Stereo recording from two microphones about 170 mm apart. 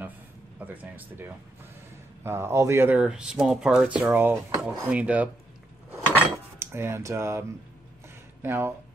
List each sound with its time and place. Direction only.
0.6 s speech: 10° right (ahead or behind)
6.6 s speech: 15° right (ahead or behind)